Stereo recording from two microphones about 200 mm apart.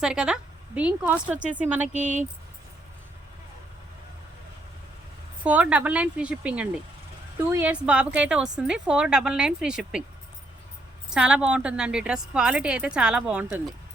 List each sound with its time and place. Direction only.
0.0 s a woman's voice: 5° right (ahead or behind)
5.4 s a woman's voice: 5° right (ahead or behind)
11.1 s a woman's voice: 5° right (ahead or behind)